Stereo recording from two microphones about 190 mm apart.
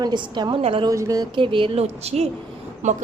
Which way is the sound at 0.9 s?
20° right (ahead or behind).